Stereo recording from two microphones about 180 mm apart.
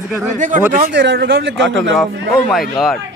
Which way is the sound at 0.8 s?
80° right.